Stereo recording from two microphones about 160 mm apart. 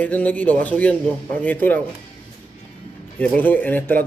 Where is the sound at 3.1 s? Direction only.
10° left (ahead or behind).